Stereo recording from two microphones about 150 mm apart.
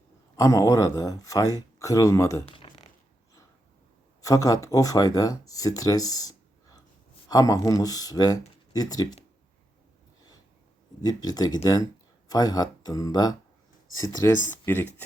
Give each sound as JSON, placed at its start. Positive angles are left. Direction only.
{"t": 0.3, "sound": "speech", "side_deg": 20}
{"t": 2.5, "sound": "a sound", "side_deg": 35}
{"t": 4.2, "sound": "speech", "side_deg": 25}
{"t": 11.0, "sound": "speech", "side_deg": 25}